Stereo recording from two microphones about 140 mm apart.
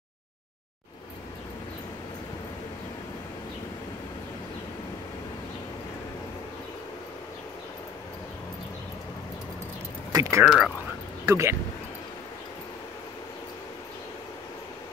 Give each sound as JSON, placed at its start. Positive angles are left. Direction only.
{"t": 10.1, "sound": "speech", "side_deg": -25}
{"t": 10.4, "sound": "speech", "side_deg": -5}
{"t": 11.2, "sound": "speech", "side_deg": -20}